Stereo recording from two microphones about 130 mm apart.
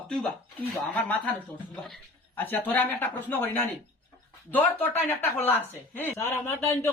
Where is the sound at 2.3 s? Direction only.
15° left (ahead or behind).